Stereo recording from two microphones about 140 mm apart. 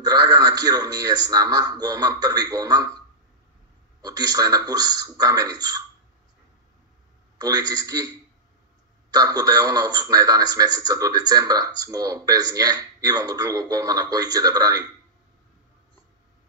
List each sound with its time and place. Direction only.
0.0 s a man's voice: 30° right (ahead or behind)
4.0 s a man's voice: 30° right (ahead or behind)
7.3 s a man's voice: 25° right (ahead or behind)
9.1 s a man's voice: 25° right (ahead or behind)